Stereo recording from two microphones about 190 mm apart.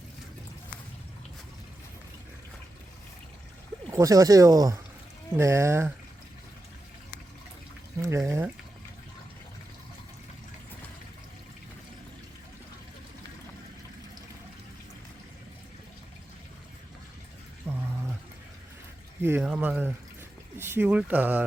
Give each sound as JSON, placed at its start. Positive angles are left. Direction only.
{"t": 3.9, "sound": "speech", "side_deg": -15}
{"t": 8.0, "sound": "speech", "side_deg": -15}
{"t": 17.7, "sound": "a sound", "side_deg": -10}
{"t": 19.2, "sound": "speech", "side_deg": -10}